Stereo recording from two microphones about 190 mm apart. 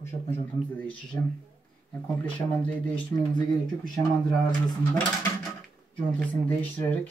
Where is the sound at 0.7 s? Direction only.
5° left (ahead or behind).